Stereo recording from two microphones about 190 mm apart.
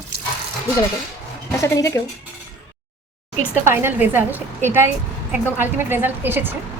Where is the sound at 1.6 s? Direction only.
15° left (ahead or behind).